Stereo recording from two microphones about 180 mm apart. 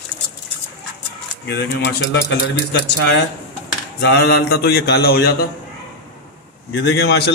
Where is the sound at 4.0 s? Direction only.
65° left (ahead or behind).